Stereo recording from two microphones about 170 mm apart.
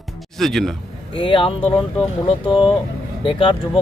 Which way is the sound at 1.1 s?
30° left (ahead or behind).